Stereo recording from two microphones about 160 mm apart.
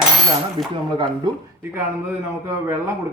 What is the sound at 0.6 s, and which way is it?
Speech, 30° right (ahead or behind).